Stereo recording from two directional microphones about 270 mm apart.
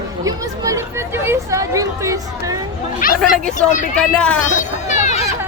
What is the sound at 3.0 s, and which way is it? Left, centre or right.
Speech, left.